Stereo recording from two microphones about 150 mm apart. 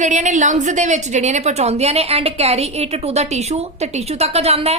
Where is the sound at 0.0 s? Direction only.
55° right (ahead or behind).